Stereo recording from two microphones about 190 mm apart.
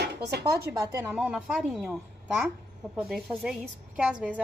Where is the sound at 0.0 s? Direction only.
60° right (ahead or behind).